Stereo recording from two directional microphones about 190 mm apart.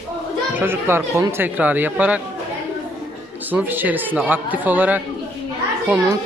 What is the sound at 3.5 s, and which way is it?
Speech, 10° right (ahead or behind).